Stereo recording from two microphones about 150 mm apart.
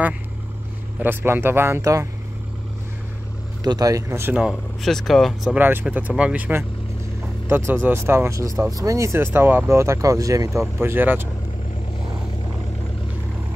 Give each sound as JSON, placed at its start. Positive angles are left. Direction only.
{"t": 0.9, "sound": "speech", "side_deg": -15}
{"t": 3.6, "sound": "speech", "side_deg": -25}
{"t": 5.6, "sound": "speech", "side_deg": -10}